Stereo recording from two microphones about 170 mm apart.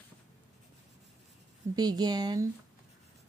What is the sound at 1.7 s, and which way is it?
Speech, 25° right (ahead or behind).